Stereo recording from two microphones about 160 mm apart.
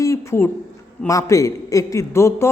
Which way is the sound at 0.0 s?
20° left (ahead or behind).